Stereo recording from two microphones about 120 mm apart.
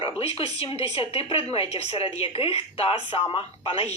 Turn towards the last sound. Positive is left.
turn(degrees=50)  # may be behind; listen again after turning